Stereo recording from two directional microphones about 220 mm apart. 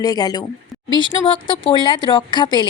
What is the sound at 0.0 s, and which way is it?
A woman's voice, 15° left (ahead or behind).